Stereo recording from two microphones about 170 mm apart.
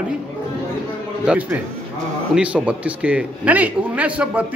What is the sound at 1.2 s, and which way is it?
A man's voice, 10° right (ahead or behind).